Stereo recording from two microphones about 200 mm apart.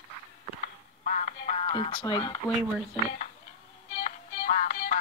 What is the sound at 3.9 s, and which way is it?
Music, 30° left (ahead or behind).